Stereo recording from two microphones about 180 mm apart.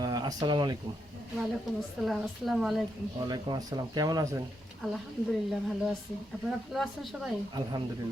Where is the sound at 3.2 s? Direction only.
20° right (ahead or behind).